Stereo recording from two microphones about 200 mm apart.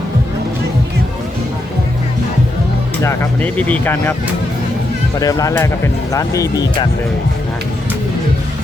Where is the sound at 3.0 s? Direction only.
10° left (ahead or behind).